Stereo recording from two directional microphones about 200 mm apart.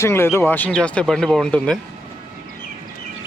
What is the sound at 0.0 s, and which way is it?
Speech, 15° left (ahead or behind).